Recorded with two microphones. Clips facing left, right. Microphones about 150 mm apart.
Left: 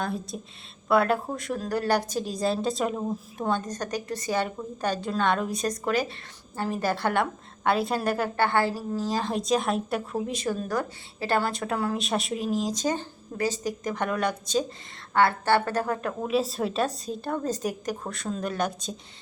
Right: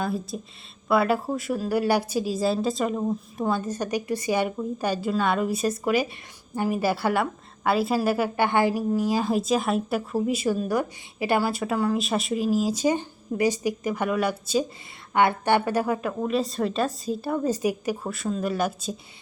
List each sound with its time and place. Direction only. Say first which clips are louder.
0.0 s a woman's voice: right 3 dB; centre (ahead or behind)
16.2 s a woman's voice: even; centre (ahead or behind)